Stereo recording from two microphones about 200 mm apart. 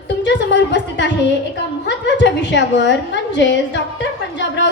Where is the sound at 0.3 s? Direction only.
60° left (ahead or behind).